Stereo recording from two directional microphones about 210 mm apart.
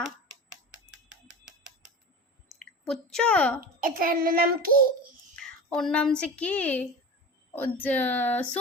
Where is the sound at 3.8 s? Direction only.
45° right (ahead or behind).